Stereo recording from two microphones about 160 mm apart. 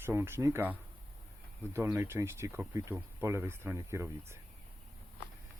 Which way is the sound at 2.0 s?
15° right (ahead or behind).